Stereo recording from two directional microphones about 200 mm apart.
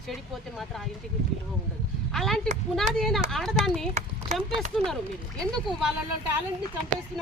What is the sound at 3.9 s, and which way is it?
Speech, 35° right (ahead or behind).